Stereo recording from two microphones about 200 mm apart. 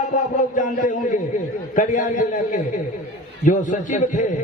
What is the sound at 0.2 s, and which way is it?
A man's voice, 40° left (ahead or behind).